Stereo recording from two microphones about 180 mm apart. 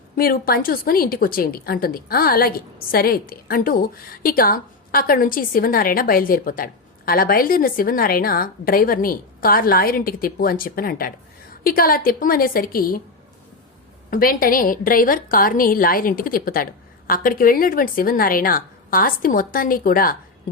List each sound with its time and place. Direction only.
0.2 s a woman's voice: 55° left (ahead or behind)
14.1 s a woman's voice: 50° left (ahead or behind)